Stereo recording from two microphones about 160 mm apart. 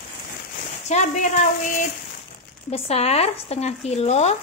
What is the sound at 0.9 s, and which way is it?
Speech, 50° left (ahead or behind).